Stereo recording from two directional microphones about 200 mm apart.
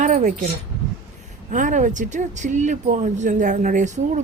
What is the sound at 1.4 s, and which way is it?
Speech, 40° right (ahead or behind).